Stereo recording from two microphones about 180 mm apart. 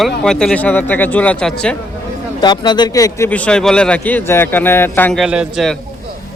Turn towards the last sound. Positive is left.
turn(degrees=0)  # may be behind; listen again after turning